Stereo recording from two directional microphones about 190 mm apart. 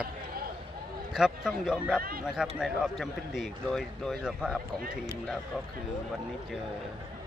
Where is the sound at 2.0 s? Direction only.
50° right (ahead or behind).